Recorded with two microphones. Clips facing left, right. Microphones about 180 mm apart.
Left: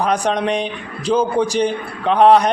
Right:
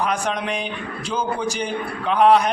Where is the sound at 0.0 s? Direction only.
35° left (ahead or behind).